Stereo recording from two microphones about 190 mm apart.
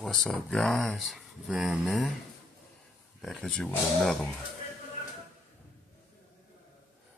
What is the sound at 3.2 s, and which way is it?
Speech, 5° left (ahead or behind).